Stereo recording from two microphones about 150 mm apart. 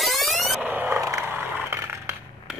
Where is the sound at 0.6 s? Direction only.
10° right (ahead or behind).